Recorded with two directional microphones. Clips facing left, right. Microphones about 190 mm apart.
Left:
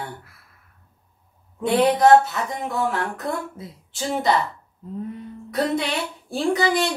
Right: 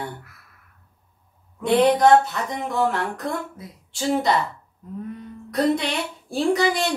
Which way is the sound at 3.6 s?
25° left (ahead or behind).